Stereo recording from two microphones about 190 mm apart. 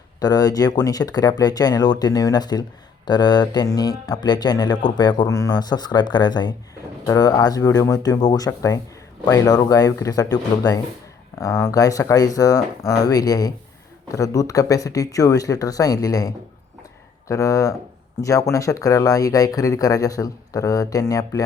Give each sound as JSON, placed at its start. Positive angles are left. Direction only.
{"t": 0.2, "sound": "speech", "side_deg": 20}